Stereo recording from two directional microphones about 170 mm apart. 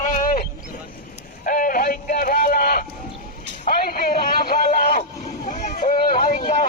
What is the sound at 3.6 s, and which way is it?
Music, 60° left (ahead or behind).